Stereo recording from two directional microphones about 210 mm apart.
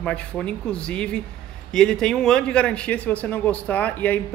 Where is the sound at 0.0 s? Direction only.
5° left (ahead or behind).